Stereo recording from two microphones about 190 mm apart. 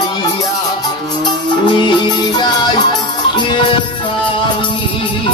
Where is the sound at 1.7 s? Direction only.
25° left (ahead or behind).